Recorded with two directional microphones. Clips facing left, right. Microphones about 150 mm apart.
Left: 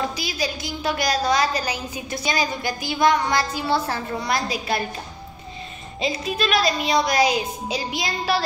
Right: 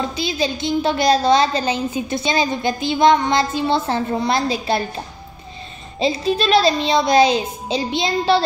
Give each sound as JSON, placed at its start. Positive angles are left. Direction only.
{"t": 0.1, "sound": "a woman's voice", "side_deg": -25}
{"t": 5.9, "sound": "a woman's voice", "side_deg": -30}